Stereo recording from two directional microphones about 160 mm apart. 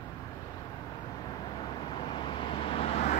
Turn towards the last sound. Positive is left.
turn(degrees=40)  # may be behind; listen again after turning